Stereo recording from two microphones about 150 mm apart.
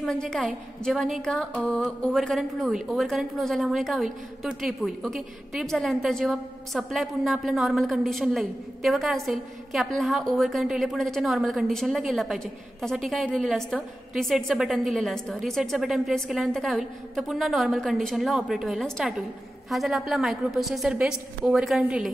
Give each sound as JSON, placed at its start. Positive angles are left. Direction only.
{"t": 0.0, "sound": "a woman's voice", "side_deg": 5}